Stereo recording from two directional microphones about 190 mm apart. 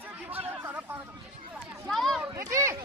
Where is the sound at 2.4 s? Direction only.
15° right (ahead or behind).